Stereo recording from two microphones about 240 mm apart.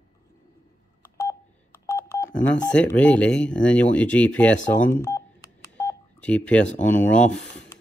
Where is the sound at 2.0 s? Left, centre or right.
Centre.